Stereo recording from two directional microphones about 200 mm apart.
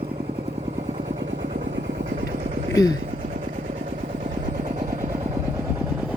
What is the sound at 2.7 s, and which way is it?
Speech, 20° left (ahead or behind).